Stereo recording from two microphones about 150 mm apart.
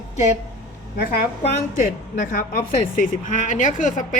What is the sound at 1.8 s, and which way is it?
A woman's voice, 60° left (ahead or behind).